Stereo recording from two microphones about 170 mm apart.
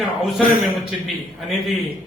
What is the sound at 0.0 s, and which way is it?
A man's voice, centre (ahead or behind).